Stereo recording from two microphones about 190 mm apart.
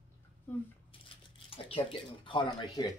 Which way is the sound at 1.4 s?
30° left (ahead or behind).